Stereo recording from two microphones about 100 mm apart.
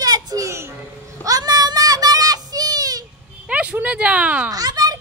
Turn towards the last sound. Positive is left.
turn(degrees=-40)  # may be behind; listen again after turning